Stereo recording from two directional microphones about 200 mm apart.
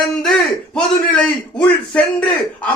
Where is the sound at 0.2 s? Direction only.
5° left (ahead or behind).